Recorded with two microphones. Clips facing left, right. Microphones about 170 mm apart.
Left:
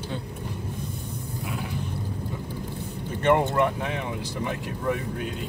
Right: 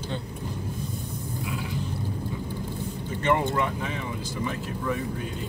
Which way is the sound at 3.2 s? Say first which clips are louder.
Left 4 dB; 60° left (ahead or behind).